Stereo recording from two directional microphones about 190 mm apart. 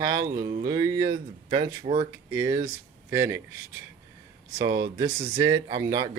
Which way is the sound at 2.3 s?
15° right (ahead or behind).